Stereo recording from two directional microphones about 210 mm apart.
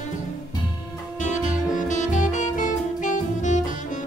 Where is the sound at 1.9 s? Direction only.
35° left (ahead or behind).